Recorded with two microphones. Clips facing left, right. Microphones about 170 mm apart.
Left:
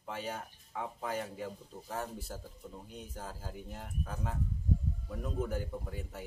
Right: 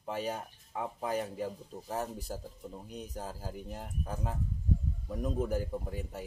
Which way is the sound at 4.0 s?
30° right (ahead or behind).